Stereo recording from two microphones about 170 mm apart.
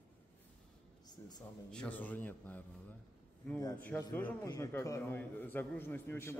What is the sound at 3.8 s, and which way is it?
A man's voice, 10° left (ahead or behind).